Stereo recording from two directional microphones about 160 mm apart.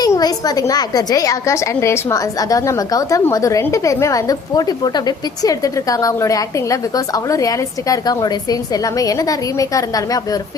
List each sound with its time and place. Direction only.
0.0 s a woman's voice: 25° left (ahead or behind)